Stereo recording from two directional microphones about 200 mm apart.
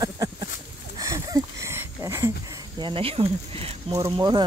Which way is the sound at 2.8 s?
25° right (ahead or behind).